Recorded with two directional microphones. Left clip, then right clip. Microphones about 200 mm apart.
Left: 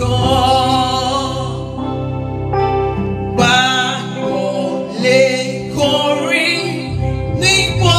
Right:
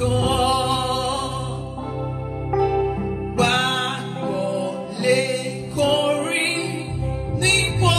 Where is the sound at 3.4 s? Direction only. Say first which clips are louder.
Left 7 dB; 50° right (ahead or behind).